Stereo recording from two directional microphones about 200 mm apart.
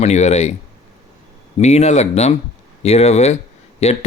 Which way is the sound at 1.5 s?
35° left (ahead or behind).